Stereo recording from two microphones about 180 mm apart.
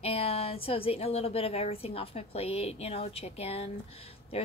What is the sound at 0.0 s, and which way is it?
A woman's voice, 35° left (ahead or behind).